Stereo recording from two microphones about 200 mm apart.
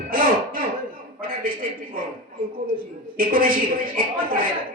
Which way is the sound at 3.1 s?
45° right (ahead or behind).